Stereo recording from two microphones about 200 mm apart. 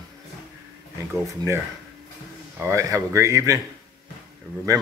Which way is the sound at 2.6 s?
15° right (ahead or behind).